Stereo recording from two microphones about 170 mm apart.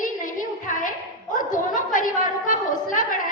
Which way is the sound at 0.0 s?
50° left (ahead or behind).